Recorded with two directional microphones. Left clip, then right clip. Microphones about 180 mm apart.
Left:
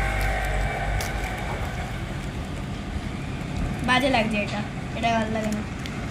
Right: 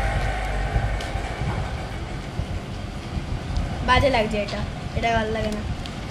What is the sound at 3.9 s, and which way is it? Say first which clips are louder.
A woman's voice: right 2 dB; 25° right (ahead or behind).